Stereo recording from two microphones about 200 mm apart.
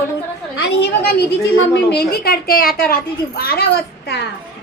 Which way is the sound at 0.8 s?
50° left (ahead or behind).